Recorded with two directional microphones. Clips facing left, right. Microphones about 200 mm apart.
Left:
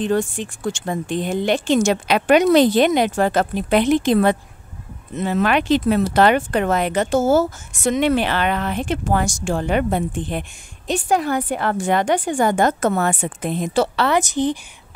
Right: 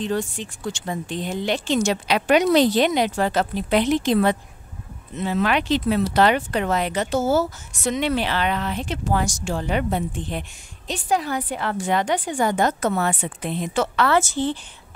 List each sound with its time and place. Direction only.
0.0 s speech: 50° left (ahead or behind)
14.0 s a woman's voice: 20° left (ahead or behind)